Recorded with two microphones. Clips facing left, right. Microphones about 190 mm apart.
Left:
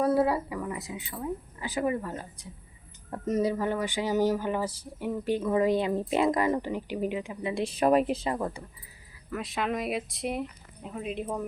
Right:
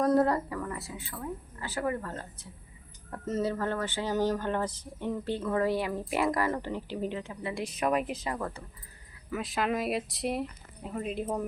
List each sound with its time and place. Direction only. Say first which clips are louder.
0.0 s a woman's voice: even; 10° left (ahead or behind); by 8.4 s 30° left (ahead or behind)
8.4 s speech: left 3 dB; 15° left (ahead or behind)
9.1 s speech: even; centre (ahead or behind)